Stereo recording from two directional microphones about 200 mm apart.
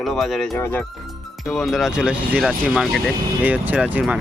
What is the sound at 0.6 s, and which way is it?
Speech, 10° left (ahead or behind).